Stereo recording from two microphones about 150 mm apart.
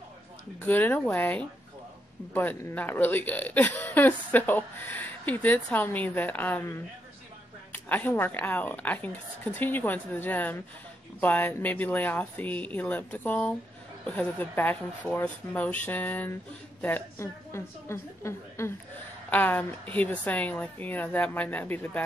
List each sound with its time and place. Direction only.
0.6 s speech: 15° left (ahead or behind)